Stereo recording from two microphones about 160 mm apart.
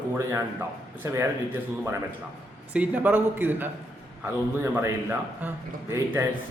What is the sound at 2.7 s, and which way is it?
A man's voice, 10° right (ahead or behind).